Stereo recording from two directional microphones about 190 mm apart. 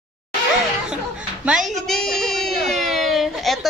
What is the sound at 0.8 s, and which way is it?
Music, 5° right (ahead or behind).